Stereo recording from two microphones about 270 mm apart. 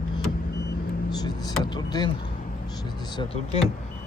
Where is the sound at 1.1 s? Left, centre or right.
Centre.